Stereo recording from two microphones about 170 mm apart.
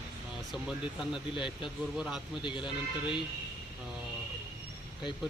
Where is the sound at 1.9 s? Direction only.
Centre (ahead or behind).